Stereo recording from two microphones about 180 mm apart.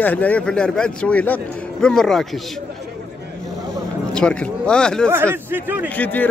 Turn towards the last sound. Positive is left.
turn(degrees=10)  # may be behind; listen again after turning